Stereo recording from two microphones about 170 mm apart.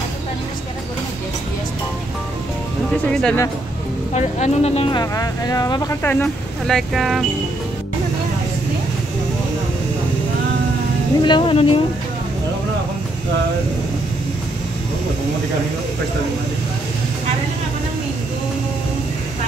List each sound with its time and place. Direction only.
2.9 s speech: 5° left (ahead or behind)
4.1 s speech: 40° left (ahead or behind)
5.1 s speech: 20° left (ahead or behind); by 7.2 s centre (ahead or behind)
11.2 s speech: 30° left (ahead or behind)